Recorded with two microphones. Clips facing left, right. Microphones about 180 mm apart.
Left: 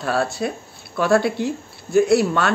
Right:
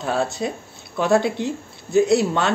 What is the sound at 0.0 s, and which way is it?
Speech, 20° right (ahead or behind).